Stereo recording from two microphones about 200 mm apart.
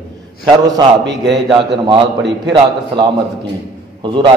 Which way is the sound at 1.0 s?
60° right (ahead or behind).